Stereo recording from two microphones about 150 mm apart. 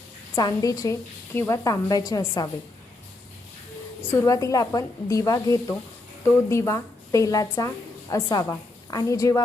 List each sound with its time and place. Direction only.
0.3 s a woman's voice: 25° left (ahead or behind)
4.1 s a woman's voice: 20° left (ahead or behind)